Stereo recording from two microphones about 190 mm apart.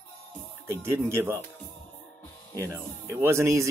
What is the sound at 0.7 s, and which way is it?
Speech, 15° right (ahead or behind).